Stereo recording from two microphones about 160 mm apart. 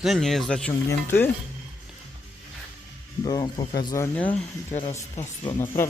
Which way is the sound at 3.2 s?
30° left (ahead or behind).